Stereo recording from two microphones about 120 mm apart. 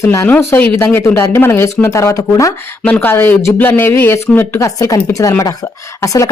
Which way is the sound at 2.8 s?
15° left (ahead or behind).